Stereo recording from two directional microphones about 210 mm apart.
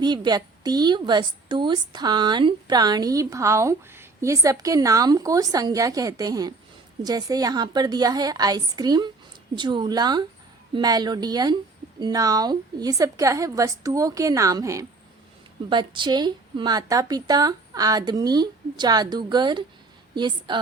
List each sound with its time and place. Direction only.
0.0 s a woman's voice: 20° right (ahead or behind)